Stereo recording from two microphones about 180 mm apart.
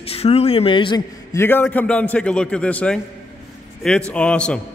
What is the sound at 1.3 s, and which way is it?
Speech, 10° left (ahead or behind).